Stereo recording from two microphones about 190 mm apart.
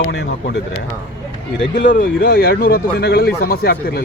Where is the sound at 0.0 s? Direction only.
60° left (ahead or behind).